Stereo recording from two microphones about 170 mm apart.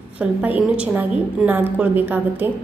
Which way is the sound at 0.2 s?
10° right (ahead or behind).